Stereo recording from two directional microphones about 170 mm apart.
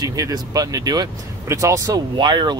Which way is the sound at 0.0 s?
20° right (ahead or behind).